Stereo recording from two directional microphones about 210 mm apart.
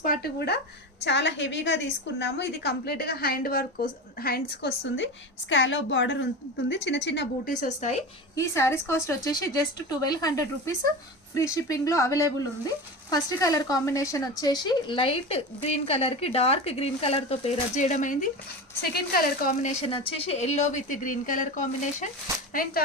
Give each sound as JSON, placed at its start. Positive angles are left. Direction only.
{"t": 0.0, "sound": "a woman's voice", "side_deg": 45}
{"t": 5.5, "sound": "speech", "side_deg": 65}
{"t": 7.5, "sound": "speech", "side_deg": 35}
{"t": 8.4, "sound": "a woman's voice", "side_deg": 15}
{"t": 19.8, "sound": "speech", "side_deg": 25}